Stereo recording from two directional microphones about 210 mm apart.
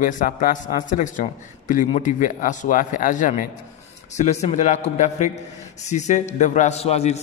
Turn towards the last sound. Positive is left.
turn(degrees=30)  # may be behind; listen again after turning